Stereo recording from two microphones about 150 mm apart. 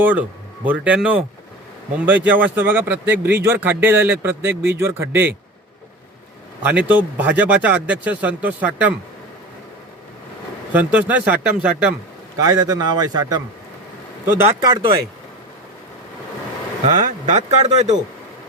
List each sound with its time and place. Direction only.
0.0 s speech: 10° right (ahead or behind)
6.6 s speech: 10° right (ahead or behind)
10.7 s speech: 10° right (ahead or behind)
12.4 s a man's voice: 25° right (ahead or behind)
14.6 s a man's voice: 30° right (ahead or behind)
16.8 s speech: 50° right (ahead or behind)